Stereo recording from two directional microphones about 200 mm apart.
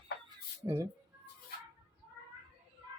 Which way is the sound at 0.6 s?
15° right (ahead or behind).